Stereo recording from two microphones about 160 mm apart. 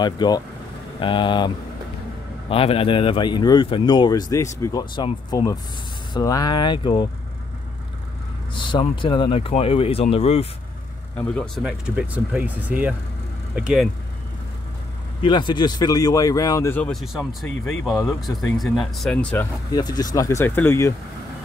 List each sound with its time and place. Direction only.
0.0 s a man's voice: 25° left (ahead or behind)
2.5 s a man's voice: 35° left (ahead or behind)
8.5 s speech: 30° left (ahead or behind)
11.1 s speech: 10° left (ahead or behind)
11.6 s speech: 5° right (ahead or behind)
15.2 s a man's voice: 30° left (ahead or behind)
16.9 s speech: centre (ahead or behind)
19.4 s speech: 15° left (ahead or behind)
19.7 s speech: 25° left (ahead or behind)